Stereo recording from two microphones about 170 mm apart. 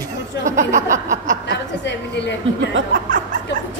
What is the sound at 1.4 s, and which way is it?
Speech, 90° left.